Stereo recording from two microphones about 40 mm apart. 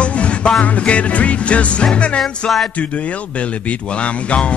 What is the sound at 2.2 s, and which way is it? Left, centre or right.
Music, centre.